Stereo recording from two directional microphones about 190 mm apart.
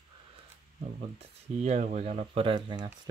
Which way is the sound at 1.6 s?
35° right (ahead or behind).